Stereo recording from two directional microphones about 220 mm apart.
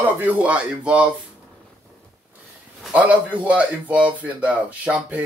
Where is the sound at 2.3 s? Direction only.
5° right (ahead or behind).